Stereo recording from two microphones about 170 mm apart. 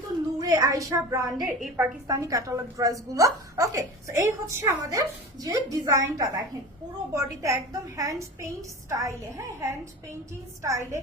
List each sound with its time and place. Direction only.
0.3 s a woman's voice: 20° right (ahead or behind)